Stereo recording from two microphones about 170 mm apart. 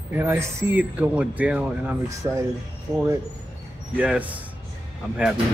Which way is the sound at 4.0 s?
10° right (ahead or behind).